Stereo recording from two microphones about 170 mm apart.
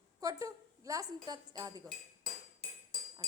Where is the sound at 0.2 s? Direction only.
20° right (ahead or behind).